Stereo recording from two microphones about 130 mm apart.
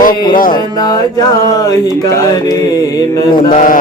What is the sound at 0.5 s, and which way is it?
Music, 30° left (ahead or behind).